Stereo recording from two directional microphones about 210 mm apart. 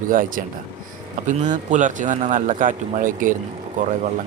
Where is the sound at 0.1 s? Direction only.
40° right (ahead or behind).